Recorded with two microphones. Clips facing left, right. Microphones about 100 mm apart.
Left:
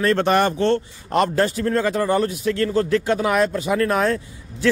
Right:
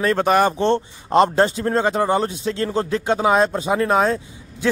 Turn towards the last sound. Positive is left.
turn(degrees=-20)  # may be behind; listen again after turning